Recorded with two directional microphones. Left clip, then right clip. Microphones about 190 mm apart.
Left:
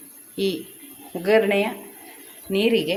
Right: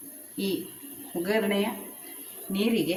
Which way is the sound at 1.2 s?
40° left (ahead or behind).